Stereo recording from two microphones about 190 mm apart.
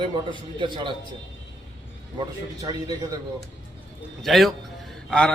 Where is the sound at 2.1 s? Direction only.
20° right (ahead or behind).